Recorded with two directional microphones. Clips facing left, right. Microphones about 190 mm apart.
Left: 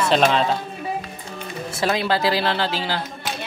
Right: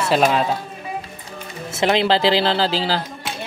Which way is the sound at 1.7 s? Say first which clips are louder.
Right 4 dB; 25° right (ahead or behind).